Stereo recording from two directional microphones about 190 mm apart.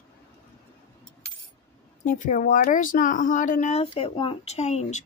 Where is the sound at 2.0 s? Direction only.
45° left (ahead or behind).